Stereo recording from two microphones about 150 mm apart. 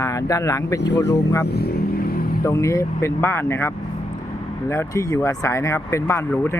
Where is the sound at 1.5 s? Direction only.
90° left.